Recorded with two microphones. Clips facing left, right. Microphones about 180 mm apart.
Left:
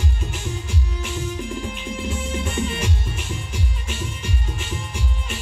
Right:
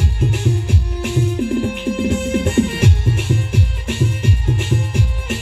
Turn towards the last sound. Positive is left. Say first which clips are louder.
# right 8 dB
turn(degrees=-65)  # may be behind; listen again after turning